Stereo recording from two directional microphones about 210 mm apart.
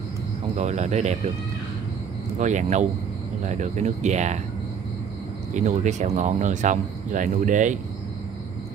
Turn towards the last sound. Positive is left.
turn(degrees=-35)  # may be behind; listen again after turning